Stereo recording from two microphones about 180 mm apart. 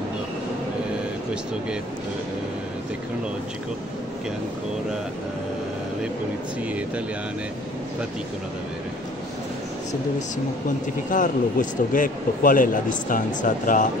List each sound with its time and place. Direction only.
11.1 s speech: 50° left (ahead or behind)